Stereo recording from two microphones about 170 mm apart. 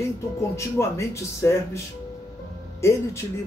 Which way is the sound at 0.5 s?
15° left (ahead or behind).